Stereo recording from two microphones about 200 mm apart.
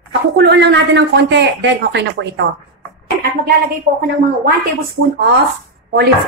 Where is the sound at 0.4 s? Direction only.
60° right (ahead or behind).